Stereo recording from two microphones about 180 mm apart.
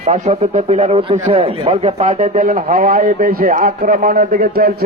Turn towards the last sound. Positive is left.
turn(degrees=-55)  # may be behind; listen again after turning